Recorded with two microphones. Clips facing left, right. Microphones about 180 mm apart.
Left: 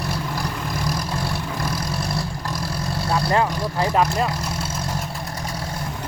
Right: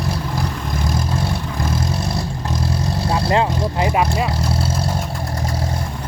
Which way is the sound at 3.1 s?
20° right (ahead or behind).